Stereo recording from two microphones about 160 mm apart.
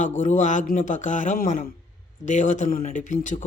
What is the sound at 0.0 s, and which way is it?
A man's voice, 50° left (ahead or behind).